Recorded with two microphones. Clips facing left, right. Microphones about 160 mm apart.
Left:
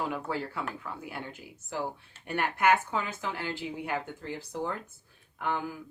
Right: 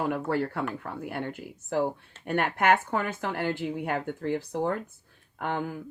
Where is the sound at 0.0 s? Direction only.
60° right (ahead or behind).